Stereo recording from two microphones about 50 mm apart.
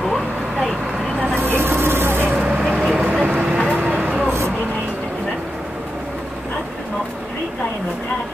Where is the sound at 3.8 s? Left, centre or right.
Right.